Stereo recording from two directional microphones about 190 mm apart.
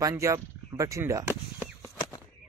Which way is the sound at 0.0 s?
15° right (ahead or behind).